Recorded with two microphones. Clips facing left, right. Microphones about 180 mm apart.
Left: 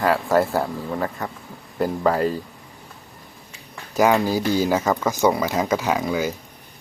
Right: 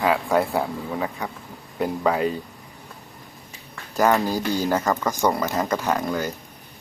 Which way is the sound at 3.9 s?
10° left (ahead or behind).